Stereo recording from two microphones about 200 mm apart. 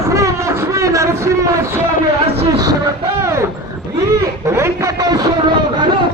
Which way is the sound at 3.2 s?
15° right (ahead or behind).